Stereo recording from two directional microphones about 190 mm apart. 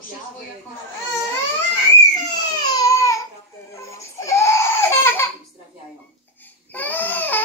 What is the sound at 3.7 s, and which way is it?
Crying, 15° left (ahead or behind).